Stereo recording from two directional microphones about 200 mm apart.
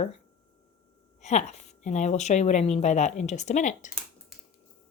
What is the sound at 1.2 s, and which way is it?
Speech, 35° left (ahead or behind).